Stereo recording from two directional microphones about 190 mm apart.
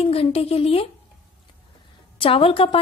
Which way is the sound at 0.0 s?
30° left (ahead or behind).